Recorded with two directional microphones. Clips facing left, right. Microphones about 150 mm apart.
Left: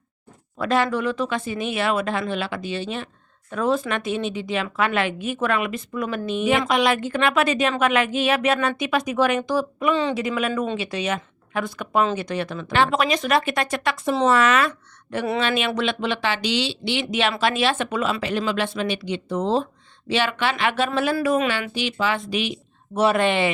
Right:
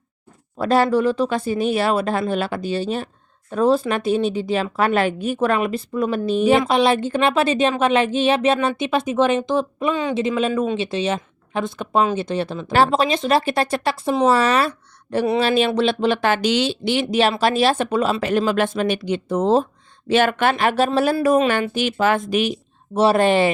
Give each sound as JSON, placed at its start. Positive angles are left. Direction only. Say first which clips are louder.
{"t": 0.6, "sound": "a woman's voice", "louder": "right 5 dB", "side_deg": -35}
{"t": 9.9, "sound": "speech", "louder": "left 2 dB", "side_deg": -10}
{"t": 10.2, "sound": "a woman's voice", "louder": "right 4 dB", "side_deg": -25}